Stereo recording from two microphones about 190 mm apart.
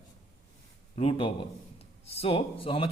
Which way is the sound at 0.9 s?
30° left (ahead or behind).